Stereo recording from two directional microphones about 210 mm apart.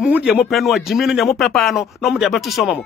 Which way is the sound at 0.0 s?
5° right (ahead or behind).